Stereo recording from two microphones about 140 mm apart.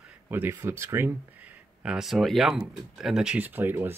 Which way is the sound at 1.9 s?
Centre (ahead or behind).